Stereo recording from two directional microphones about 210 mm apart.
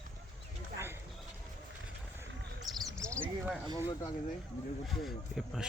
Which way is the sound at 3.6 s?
20° right (ahead or behind).